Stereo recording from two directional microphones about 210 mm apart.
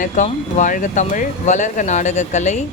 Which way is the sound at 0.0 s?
35° left (ahead or behind).